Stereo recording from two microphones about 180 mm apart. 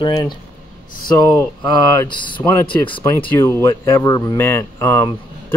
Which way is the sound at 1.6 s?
25° left (ahead or behind).